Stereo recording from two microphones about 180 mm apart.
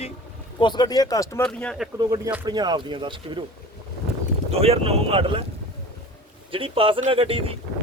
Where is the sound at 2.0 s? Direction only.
20° right (ahead or behind).